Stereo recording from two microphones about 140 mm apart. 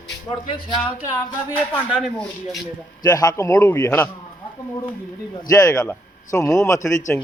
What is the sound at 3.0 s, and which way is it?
Speech, 25° left (ahead or behind).